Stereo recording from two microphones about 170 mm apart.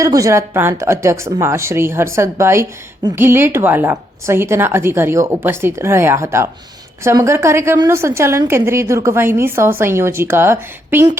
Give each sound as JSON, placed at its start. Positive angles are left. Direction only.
{"t": 0.0, "sound": "speech", "side_deg": -20}